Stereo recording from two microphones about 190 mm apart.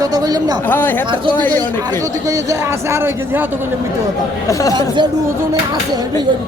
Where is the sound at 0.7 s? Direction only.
10° left (ahead or behind).